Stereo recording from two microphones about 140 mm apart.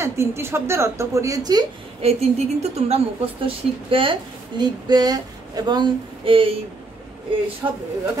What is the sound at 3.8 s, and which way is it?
Speech, 40° right (ahead or behind).